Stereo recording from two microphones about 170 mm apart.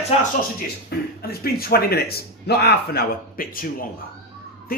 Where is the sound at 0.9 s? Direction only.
65° left (ahead or behind).